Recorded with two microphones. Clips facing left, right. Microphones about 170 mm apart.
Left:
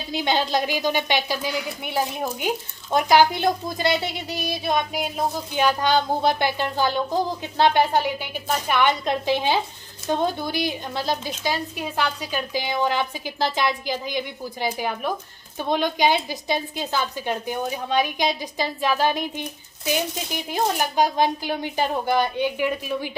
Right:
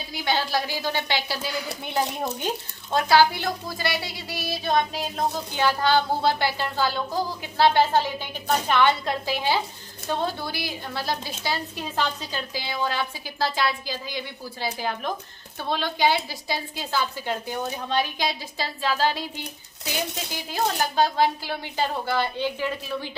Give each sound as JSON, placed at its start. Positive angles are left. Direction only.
{"t": 0.1, "sound": "a woman's voice", "side_deg": 20}